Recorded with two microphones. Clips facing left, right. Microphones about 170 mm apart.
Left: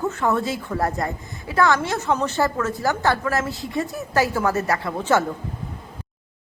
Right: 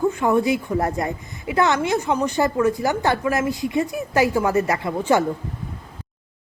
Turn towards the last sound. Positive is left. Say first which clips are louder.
# right 1 dB
turn(degrees=-15)  # may be behind; listen again after turning